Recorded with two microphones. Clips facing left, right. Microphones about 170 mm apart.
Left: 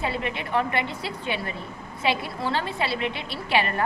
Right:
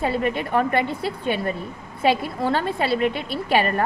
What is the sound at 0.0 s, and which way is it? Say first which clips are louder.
A woman's voice: right 6 dB; 45° right (ahead or behind).